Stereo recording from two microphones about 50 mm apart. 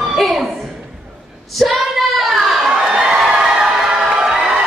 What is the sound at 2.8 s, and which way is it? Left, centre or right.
Crowd, centre.